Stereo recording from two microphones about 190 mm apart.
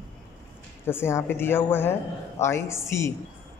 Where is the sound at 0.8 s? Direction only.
10° left (ahead or behind).